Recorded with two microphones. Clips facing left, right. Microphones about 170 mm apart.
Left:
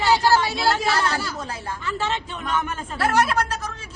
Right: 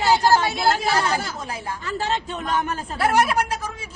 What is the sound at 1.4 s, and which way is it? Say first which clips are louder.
Speech: right 1 dB; 10° right (ahead or behind).